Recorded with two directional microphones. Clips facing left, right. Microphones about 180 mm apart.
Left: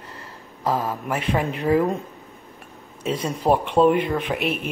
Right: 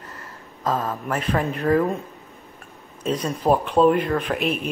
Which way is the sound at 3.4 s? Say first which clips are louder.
Even; 5° left (ahead or behind).